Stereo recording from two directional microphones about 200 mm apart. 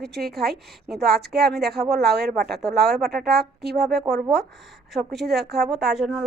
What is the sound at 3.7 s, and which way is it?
Speech, 50° right (ahead or behind).